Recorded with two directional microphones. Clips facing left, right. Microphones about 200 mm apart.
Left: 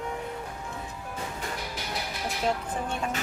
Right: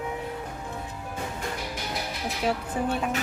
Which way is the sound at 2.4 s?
5° right (ahead or behind).